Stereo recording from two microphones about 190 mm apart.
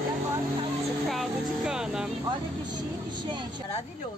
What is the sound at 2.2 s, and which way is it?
Speech, 20° right (ahead or behind).